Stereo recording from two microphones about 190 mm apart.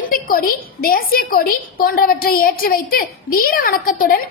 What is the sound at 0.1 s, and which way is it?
A woman's voice, 50° left (ahead or behind).